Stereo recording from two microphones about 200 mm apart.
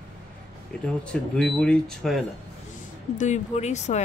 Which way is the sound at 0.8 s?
5° left (ahead or behind).